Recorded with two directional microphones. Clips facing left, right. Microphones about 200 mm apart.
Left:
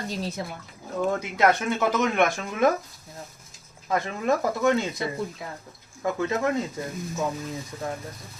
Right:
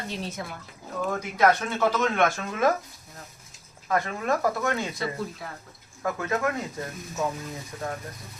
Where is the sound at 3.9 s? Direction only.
20° left (ahead or behind).